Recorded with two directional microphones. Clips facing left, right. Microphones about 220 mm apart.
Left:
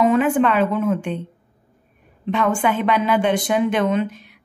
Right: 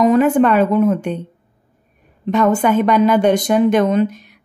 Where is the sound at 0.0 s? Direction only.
40° right (ahead or behind).